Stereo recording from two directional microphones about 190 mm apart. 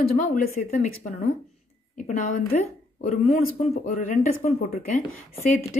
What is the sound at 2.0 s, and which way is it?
Speech, 40° left (ahead or behind).